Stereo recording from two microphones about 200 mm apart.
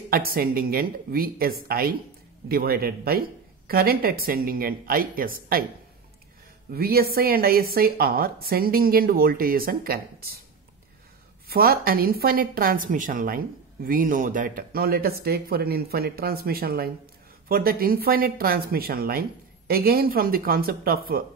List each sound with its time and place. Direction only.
0.1 s a woman's voice: 45° right (ahead or behind)
6.7 s a woman's voice: 50° right (ahead or behind)
11.4 s a woman's voice: 50° right (ahead or behind)